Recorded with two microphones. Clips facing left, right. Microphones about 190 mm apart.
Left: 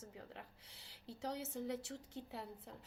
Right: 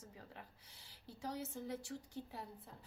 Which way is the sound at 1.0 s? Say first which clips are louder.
Left 1 dB; 25° left (ahead or behind).